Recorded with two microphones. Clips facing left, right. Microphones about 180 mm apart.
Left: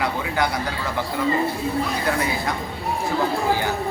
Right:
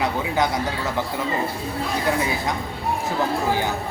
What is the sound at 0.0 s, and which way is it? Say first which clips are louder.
Speech: right 1 dB; 20° right (ahead or behind).